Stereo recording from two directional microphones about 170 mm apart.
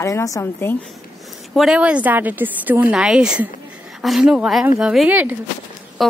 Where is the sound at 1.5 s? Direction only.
5° right (ahead or behind).